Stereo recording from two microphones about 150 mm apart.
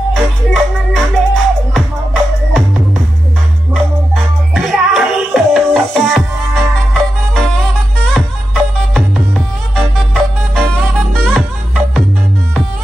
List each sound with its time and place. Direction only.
0.1 s music: 5° left (ahead or behind)
3.7 s music: centre (ahead or behind)